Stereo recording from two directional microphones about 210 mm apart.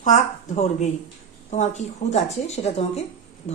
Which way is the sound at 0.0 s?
35° left (ahead or behind).